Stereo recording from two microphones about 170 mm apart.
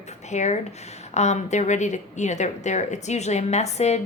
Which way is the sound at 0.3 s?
45° left (ahead or behind).